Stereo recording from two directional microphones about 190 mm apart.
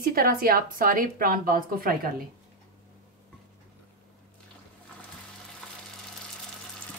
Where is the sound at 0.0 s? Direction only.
50° right (ahead or behind).